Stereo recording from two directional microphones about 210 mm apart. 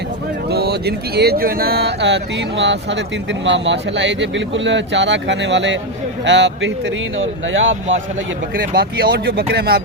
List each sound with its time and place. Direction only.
0.5 s speech: 50° right (ahead or behind); by 8.0 s 65° right (ahead or behind)
8.5 s speech: 45° right (ahead or behind)